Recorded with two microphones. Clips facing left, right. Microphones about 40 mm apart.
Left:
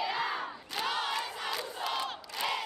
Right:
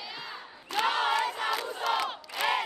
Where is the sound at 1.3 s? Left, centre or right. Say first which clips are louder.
Right 5 dB; centre.